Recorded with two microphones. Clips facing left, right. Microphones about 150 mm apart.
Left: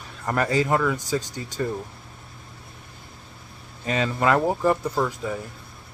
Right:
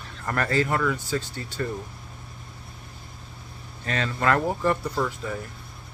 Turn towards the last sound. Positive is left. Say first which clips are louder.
# left 2 dB
turn(degrees=15)  # may be behind; listen again after turning